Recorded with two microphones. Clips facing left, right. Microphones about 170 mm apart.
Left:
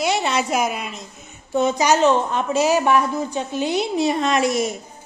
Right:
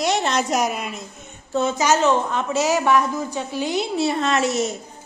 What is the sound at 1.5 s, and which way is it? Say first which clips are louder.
A woman's voice: left 2 dB; 15° left (ahead or behind).